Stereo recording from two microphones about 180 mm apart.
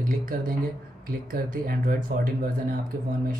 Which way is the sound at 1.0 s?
55° right (ahead or behind).